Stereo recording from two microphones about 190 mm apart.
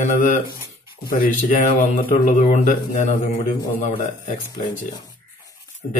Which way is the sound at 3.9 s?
25° left (ahead or behind).